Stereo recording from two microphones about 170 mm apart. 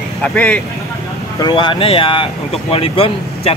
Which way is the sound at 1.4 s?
25° left (ahead or behind).